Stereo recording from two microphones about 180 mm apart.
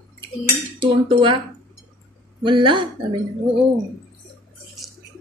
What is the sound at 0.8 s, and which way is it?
Speech, 25° right (ahead or behind).